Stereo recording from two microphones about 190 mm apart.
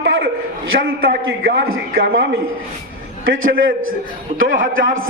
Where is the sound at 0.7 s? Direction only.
60° right (ahead or behind).